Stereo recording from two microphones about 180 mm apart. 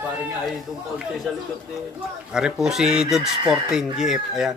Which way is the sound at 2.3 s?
5° right (ahead or behind).